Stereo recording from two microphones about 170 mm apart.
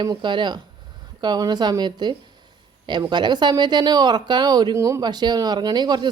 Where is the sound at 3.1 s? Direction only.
25° right (ahead or behind).